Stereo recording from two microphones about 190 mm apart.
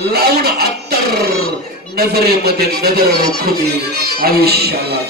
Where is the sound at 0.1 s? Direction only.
55° right (ahead or behind).